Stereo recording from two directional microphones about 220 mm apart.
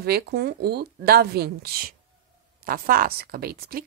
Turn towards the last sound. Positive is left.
turn(degrees=-45)  # may be behind; listen again after turning